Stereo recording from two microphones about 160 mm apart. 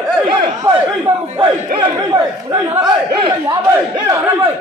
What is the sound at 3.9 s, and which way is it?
Speech, 20° right (ahead or behind).